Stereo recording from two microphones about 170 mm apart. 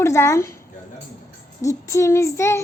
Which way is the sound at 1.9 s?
15° left (ahead or behind).